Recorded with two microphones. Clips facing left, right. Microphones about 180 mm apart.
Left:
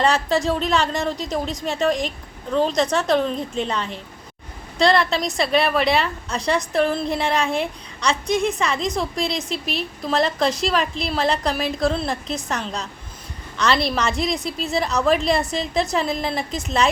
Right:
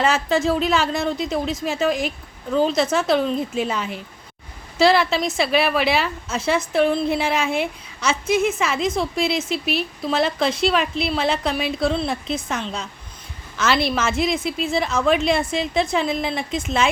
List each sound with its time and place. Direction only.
0.0 s a woman's voice: centre (ahead or behind)